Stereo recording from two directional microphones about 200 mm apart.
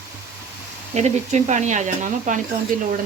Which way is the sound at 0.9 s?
35° right (ahead or behind).